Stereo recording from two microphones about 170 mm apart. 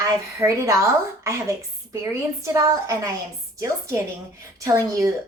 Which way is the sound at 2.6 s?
15° right (ahead or behind).